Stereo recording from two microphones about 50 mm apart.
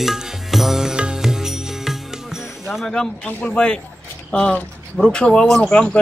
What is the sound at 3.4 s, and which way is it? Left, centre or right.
Speech, centre.